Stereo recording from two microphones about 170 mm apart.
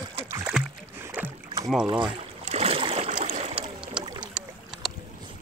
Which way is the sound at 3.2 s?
40° right (ahead or behind).